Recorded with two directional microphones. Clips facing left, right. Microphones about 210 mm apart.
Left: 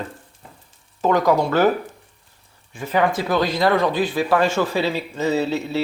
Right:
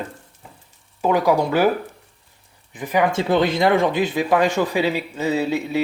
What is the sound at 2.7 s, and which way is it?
Speech, 15° right (ahead or behind).